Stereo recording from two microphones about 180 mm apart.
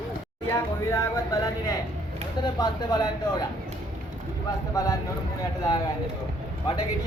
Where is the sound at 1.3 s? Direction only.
20° left (ahead or behind).